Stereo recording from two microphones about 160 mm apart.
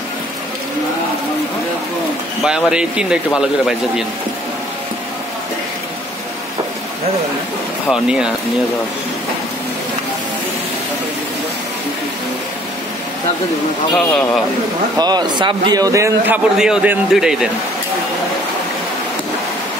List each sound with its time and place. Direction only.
2.4 s speech: 5° right (ahead or behind)
7.9 s speech: 5° right (ahead or behind)
13.9 s speech: 5° left (ahead or behind)
15.0 s speech: 25° right (ahead or behind)
16.5 s speech: 5° right (ahead or behind)